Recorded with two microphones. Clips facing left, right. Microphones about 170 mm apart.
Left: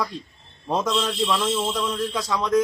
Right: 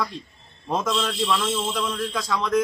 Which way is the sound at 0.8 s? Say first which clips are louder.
Even; 20° left (ahead or behind).